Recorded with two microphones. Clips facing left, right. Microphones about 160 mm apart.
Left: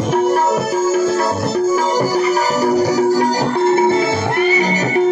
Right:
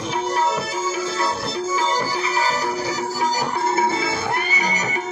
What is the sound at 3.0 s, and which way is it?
Music, 70° left (ahead or behind).